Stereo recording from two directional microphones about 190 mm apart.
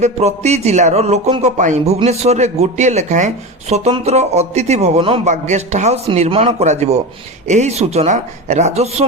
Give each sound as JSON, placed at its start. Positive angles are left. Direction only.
{"t": 0.0, "sound": "speech", "side_deg": -35}